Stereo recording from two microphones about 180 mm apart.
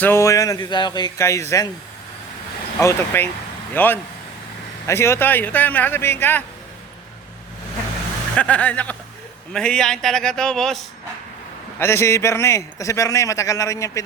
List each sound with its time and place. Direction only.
0.0 s speech: 15° left (ahead or behind)
2.8 s a man's voice: 10° left (ahead or behind)
8.4 s a man's voice: 10° left (ahead or behind)
11.8 s a man's voice: 15° left (ahead or behind)